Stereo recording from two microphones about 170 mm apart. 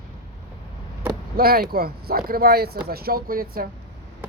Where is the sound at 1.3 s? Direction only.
60° right (ahead or behind).